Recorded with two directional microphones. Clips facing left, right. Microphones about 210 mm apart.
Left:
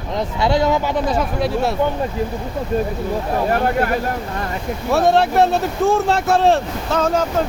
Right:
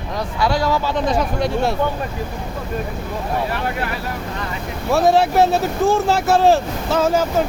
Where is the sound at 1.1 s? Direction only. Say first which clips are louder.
Even; centre (ahead or behind).